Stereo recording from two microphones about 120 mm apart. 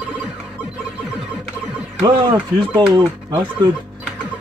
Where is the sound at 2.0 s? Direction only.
45° right (ahead or behind).